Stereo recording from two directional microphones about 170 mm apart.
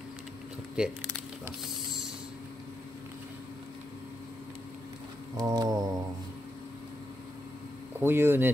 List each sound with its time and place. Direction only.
0.8 s speech: 5° right (ahead or behind)
5.4 s a sound: 20° right (ahead or behind)
8.0 s speech: 15° right (ahead or behind)